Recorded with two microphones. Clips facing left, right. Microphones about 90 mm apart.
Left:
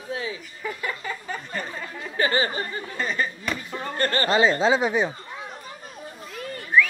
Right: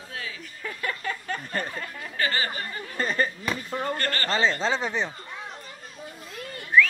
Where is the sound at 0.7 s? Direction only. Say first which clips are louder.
Left 1 dB; 10° left (ahead or behind).